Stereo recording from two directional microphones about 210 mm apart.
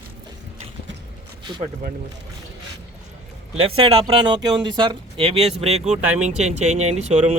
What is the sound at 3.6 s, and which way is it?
Speech, 25° right (ahead or behind).